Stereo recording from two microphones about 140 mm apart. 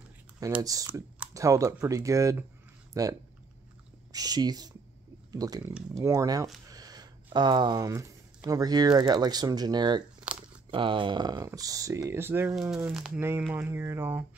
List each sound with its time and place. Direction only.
0.6 s speech: 25° right (ahead or behind)
12.7 s speech: 5° right (ahead or behind)